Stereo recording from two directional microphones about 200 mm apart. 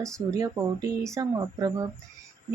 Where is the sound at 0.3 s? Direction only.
15° right (ahead or behind).